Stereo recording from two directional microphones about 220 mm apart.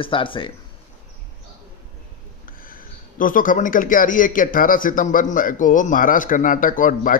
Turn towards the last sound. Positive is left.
turn(degrees=40)  # may be behind; listen again after turning